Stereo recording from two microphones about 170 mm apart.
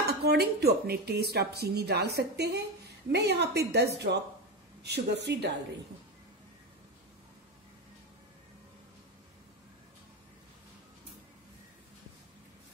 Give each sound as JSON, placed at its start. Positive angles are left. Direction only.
{"t": 0.0, "sound": "speech", "side_deg": -70}